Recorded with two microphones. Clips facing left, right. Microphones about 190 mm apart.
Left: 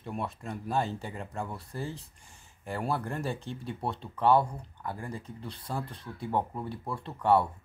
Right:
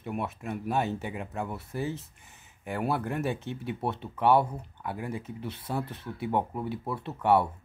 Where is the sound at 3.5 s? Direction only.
60° right (ahead or behind).